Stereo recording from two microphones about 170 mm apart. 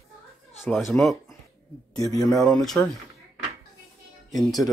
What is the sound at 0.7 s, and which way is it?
Speech, centre (ahead or behind).